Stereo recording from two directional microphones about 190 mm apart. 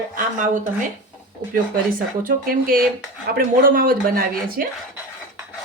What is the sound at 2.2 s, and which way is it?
Speech, 50° right (ahead or behind).